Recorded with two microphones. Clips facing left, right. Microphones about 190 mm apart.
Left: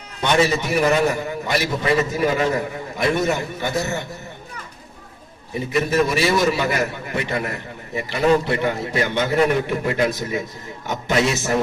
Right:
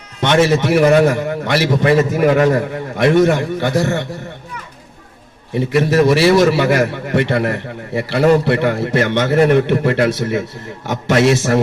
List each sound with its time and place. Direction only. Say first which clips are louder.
0.2 s a man's voice: right 5 dB; 80° right
2.1 s a man's voice: right 7 dB; 65° right (ahead or behind); by 4.0 s 90° right
5.5 s a man's voice: right 6 dB; 75° right (ahead or behind)